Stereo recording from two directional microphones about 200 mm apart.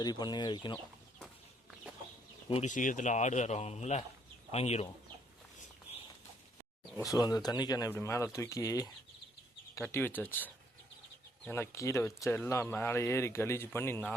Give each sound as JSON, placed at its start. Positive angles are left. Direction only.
{"t": 0.0, "sound": "speech", "side_deg": 20}
{"t": 2.5, "sound": "speech", "side_deg": 35}
{"t": 7.1, "sound": "speech", "side_deg": 20}